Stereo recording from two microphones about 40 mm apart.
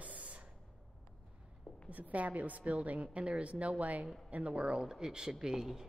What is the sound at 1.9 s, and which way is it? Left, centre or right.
A woman's voice, right.